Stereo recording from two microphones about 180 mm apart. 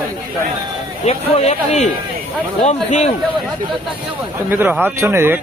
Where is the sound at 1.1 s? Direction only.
35° left (ahead or behind).